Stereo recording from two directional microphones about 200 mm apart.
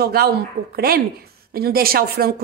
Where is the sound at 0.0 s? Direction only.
50° right (ahead or behind).